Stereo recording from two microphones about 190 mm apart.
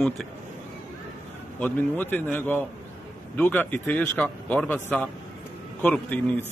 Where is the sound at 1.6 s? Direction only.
10° left (ahead or behind).